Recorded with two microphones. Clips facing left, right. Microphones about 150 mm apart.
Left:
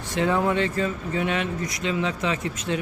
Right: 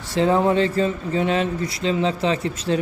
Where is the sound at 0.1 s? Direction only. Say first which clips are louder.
Right 5 dB; 30° right (ahead or behind).